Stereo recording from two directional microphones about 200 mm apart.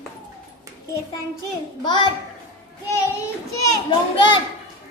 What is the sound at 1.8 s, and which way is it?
Speech, 25° left (ahead or behind).